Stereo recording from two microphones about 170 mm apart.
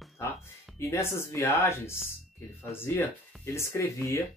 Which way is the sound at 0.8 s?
15° left (ahead or behind).